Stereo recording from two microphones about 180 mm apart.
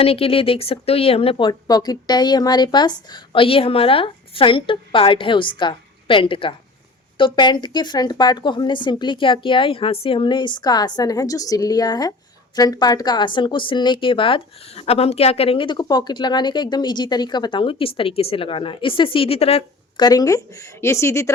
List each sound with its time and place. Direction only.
0.0 s a woman's voice: 30° left (ahead or behind)
20.1 s speech: 20° left (ahead or behind)